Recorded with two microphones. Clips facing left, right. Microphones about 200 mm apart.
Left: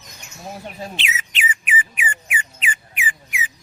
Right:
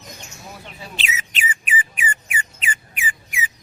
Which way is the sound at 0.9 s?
40° right (ahead or behind).